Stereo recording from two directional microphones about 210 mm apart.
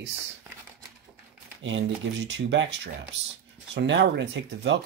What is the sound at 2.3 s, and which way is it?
Speech, 60° right (ahead or behind).